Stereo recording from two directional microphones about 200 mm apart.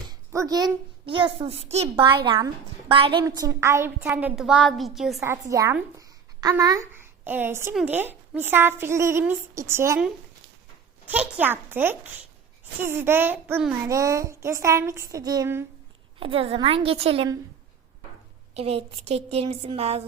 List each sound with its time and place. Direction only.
0.1 s a child's voice: 15° right (ahead or behind); by 2.0 s 30° right (ahead or behind)
2.2 s a woman's voice: 20° right (ahead or behind); by 5.2 s centre (ahead or behind)
5.2 s a woman's voice: 15° right (ahead or behind)
11.0 s a child's voice: 10° right (ahead or behind)
16.2 s a woman's voice: 30° right (ahead or behind)
18.5 s a woman's voice: 30° right (ahead or behind)